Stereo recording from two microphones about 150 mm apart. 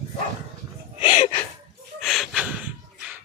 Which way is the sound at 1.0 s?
55° left (ahead or behind).